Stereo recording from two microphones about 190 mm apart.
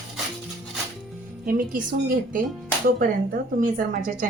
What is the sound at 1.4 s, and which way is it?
A woman's voice, 50° right (ahead or behind).